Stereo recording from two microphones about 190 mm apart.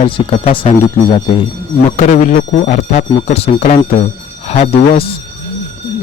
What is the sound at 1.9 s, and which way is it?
Speech, 40° left (ahead or behind).